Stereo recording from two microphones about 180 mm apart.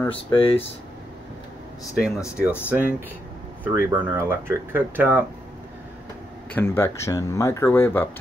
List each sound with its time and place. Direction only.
0.1 s speech: 30° left (ahead or behind)
2.0 s speech: 5° right (ahead or behind)
6.5 s speech: 15° left (ahead or behind)